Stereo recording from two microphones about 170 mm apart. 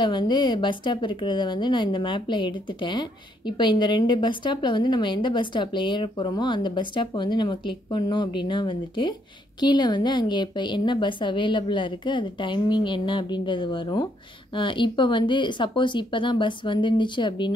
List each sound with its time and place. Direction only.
0.0 s a woman's voice: 25° left (ahead or behind)